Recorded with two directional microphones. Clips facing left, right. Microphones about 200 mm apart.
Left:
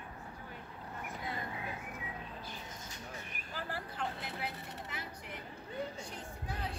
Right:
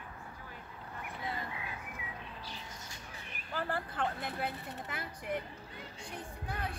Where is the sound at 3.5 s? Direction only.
55° right (ahead or behind).